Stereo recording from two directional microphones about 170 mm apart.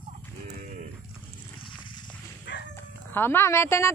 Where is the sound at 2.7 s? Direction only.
15° left (ahead or behind).